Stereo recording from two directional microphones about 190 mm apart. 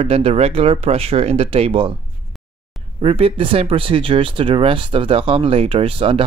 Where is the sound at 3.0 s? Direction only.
30° right (ahead or behind).